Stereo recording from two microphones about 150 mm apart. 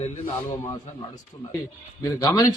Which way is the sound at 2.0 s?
25° left (ahead or behind).